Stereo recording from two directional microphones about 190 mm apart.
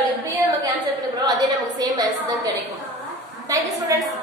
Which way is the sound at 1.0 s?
20° right (ahead or behind).